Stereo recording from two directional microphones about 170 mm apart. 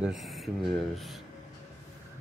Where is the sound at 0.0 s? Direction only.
Centre (ahead or behind).